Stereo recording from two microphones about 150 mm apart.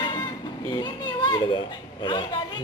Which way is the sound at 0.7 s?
30° left (ahead or behind).